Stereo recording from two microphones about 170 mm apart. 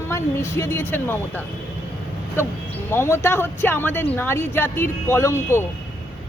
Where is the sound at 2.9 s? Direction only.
15° left (ahead or behind).